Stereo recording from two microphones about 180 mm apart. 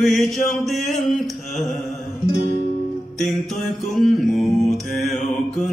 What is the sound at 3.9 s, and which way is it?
Mantra, centre (ahead or behind).